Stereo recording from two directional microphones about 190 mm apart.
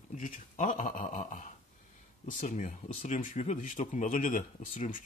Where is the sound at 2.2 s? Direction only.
40° left (ahead or behind).